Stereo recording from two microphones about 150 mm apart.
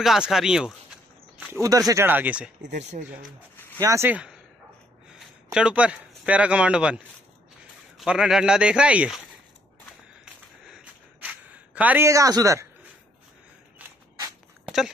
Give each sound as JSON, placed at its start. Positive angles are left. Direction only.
{"t": 0.0, "sound": "speech", "side_deg": 0}
{"t": 1.6, "sound": "speech", "side_deg": -25}
{"t": 2.0, "sound": "speech", "side_deg": -10}
{"t": 3.8, "sound": "speech", "side_deg": -20}
{"t": 5.1, "sound": "speech", "side_deg": -5}
{"t": 8.0, "sound": "speech", "side_deg": 0}
{"t": 10.6, "sound": "a sound", "side_deg": -5}
{"t": 13.7, "sound": "a sound", "side_deg": -10}